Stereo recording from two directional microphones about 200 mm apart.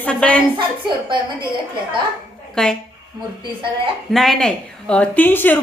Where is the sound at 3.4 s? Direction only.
25° right (ahead or behind).